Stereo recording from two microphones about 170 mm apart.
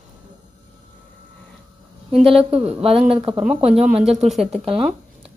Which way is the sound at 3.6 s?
5° right (ahead or behind).